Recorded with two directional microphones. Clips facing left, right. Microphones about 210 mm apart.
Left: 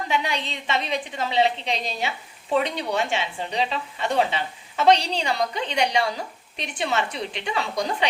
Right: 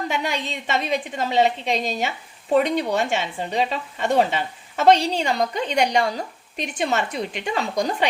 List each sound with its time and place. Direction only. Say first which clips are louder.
0.1 s a woman's voice: right 1 dB; 45° right (ahead or behind)